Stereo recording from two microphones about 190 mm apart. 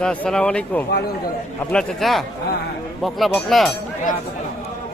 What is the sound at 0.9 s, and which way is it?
Speech, 60° left (ahead or behind).